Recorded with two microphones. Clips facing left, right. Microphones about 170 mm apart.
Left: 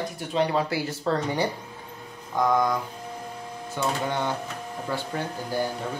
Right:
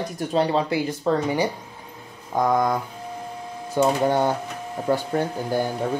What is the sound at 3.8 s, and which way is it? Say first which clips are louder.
Speech: right 8 dB; 40° right (ahead or behind).